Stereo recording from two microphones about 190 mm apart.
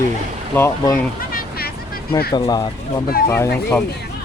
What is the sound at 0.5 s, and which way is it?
Speech, 15° left (ahead or behind).